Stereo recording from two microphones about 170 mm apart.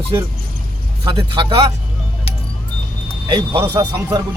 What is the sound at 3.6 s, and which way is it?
Speech, 20° right (ahead or behind).